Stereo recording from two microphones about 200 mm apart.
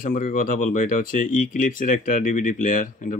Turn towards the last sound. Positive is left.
turn(degrees=40)  # may be behind; listen again after turning